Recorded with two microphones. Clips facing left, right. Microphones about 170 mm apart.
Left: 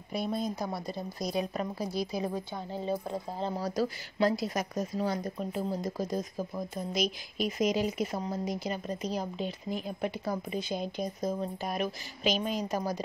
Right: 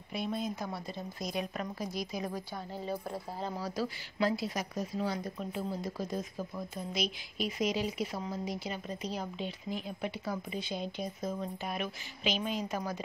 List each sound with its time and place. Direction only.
0.1 s a woman's voice: 40° left (ahead or behind)
3.5 s speech: 40° left (ahead or behind)